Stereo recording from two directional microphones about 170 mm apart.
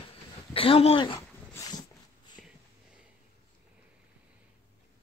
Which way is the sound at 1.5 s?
20° left (ahead or behind).